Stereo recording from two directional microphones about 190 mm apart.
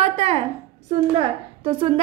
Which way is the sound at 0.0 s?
35° right (ahead or behind).